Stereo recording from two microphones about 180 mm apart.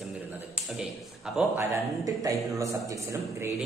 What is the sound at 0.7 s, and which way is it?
Speech, centre (ahead or behind).